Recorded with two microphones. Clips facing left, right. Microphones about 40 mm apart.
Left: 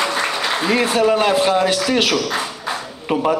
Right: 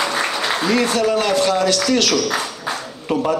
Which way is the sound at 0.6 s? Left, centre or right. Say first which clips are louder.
Left 2 dB; centre.